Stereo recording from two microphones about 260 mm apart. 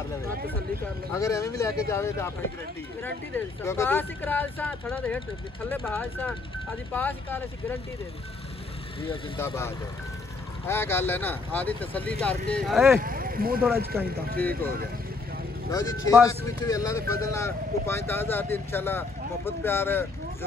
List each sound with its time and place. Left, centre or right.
1.1 s speech: centre
10.7 s speech: centre
13.0 s speech: right
13.9 s speech: centre
15.7 s speech: centre